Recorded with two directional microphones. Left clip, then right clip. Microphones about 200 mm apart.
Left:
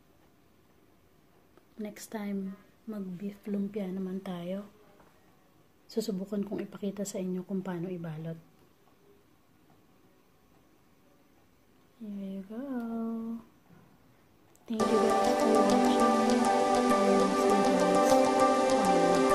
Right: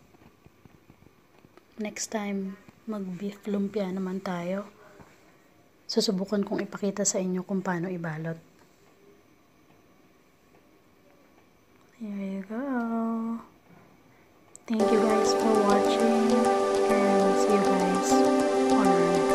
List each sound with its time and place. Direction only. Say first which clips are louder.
1.8 s a woman's voice: right 8 dB; 5° right (ahead or behind)
5.9 s a woman's voice: right 8 dB; 15° right (ahead or behind)
12.4 s humming: right 8 dB; 15° right (ahead or behind)
14.8 s music: right 3 dB; centre (ahead or behind)